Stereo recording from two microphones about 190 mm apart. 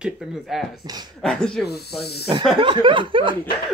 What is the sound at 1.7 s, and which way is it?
Speech, 60° left (ahead or behind).